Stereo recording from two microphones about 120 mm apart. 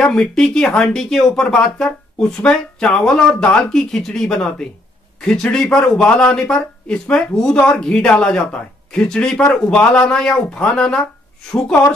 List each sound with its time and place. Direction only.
0.0 s speech: 5° left (ahead or behind)